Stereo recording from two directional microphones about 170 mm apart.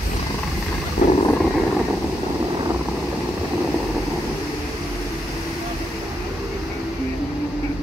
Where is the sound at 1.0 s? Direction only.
55° left (ahead or behind).